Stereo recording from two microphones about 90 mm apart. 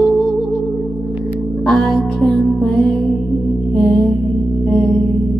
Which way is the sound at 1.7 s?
5° left (ahead or behind).